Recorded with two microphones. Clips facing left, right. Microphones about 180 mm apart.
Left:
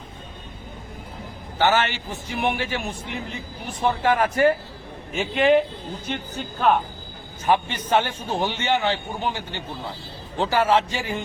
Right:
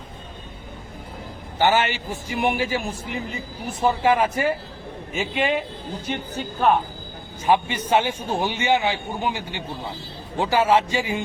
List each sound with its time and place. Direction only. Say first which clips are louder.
1.5 s a man's voice: right 1 dB; 10° right (ahead or behind)
7.4 s a man's voice: right 1 dB; 10° right (ahead or behind)